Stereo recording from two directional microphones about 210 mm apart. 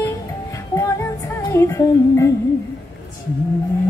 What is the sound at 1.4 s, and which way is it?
Music, 15° left (ahead or behind).